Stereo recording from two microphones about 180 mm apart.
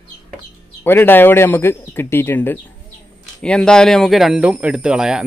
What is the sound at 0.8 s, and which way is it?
Speech, 10° left (ahead or behind).